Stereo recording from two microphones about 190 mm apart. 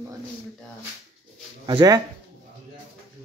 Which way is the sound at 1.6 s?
20° right (ahead or behind).